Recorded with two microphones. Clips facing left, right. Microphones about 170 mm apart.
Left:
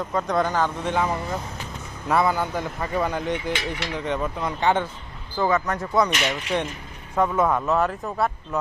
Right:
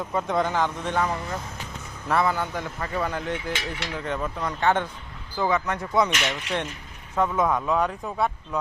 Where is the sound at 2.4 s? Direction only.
30° left (ahead or behind).